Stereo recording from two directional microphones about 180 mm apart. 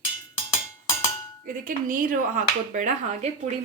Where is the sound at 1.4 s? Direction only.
50° right (ahead or behind).